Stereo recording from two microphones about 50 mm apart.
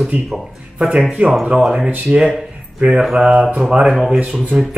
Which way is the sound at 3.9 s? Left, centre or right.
Centre.